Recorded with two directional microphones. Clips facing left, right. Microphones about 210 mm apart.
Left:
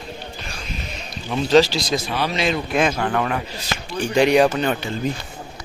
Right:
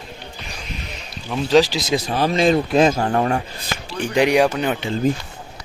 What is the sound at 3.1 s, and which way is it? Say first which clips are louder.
Speech: right 3 dB; 30° right (ahead or behind).